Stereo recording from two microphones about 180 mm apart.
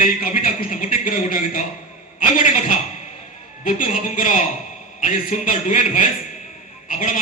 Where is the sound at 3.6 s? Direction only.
50° left (ahead or behind).